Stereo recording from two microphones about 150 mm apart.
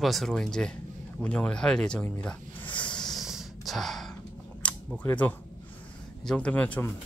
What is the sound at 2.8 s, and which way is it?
Snort, 5° left (ahead or behind).